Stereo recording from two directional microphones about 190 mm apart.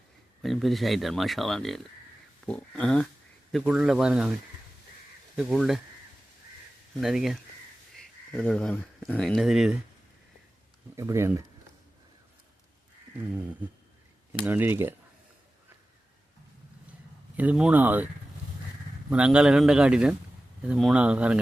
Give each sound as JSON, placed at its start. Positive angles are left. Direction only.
{"t": 0.4, "sound": "speech", "side_deg": 0}
{"t": 5.4, "sound": "speech", "side_deg": 0}
{"t": 7.0, "sound": "speech", "side_deg": 0}
{"t": 10.9, "sound": "speech", "side_deg": -15}
{"t": 14.4, "sound": "speech", "side_deg": -10}
{"t": 17.3, "sound": "speech", "side_deg": -10}
{"t": 19.1, "sound": "speech", "side_deg": -5}